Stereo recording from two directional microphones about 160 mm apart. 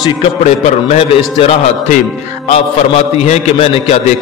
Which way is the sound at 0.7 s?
40° left (ahead or behind).